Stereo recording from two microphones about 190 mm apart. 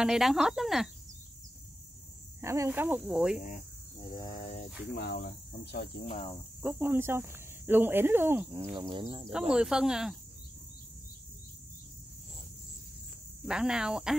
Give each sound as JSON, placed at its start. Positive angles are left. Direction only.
{"t": 0.0, "sound": "speech", "side_deg": 0}
{"t": 2.4, "sound": "speech", "side_deg": -15}
{"t": 4.1, "sound": "cricket", "side_deg": 20}
{"t": 4.9, "sound": "cricket", "side_deg": 55}
{"t": 6.0, "sound": "cricket", "side_deg": 40}
{"t": 6.6, "sound": "speech", "side_deg": -10}
{"t": 8.5, "sound": "speech", "side_deg": -25}
{"t": 9.5, "sound": "speech", "side_deg": -5}
{"t": 13.5, "sound": "speech", "side_deg": -5}